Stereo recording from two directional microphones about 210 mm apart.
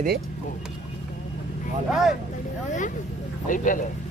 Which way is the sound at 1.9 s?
Centre (ahead or behind).